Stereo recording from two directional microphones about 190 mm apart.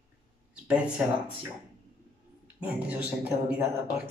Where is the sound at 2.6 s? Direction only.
10° right (ahead or behind).